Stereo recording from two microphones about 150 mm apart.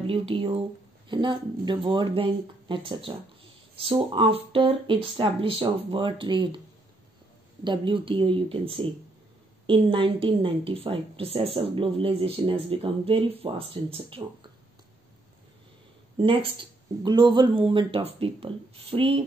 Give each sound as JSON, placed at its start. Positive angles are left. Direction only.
{"t": 0.0, "sound": "a woman's voice", "side_deg": -40}
{"t": 7.6, "sound": "a woman's voice", "side_deg": -30}
{"t": 16.2, "sound": "a woman's voice", "side_deg": -35}